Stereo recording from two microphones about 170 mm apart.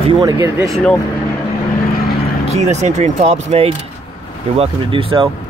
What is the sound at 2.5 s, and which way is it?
Speech, 40° right (ahead or behind).